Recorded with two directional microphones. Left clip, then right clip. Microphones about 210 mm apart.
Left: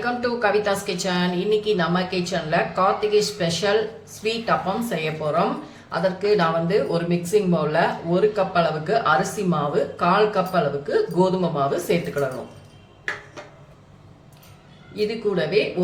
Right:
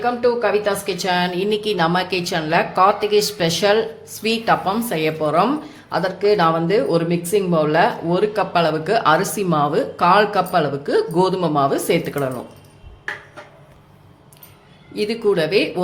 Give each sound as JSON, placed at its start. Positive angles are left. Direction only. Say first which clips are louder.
{"t": 0.0, "sound": "speech", "louder": "right 4 dB", "side_deg": -25}
{"t": 14.9, "sound": "speech", "louder": "right 5 dB", "side_deg": -50}